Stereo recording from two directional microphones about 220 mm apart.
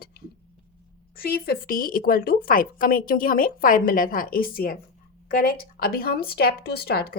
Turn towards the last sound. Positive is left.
turn(degrees=45)  # may be behind; listen again after turning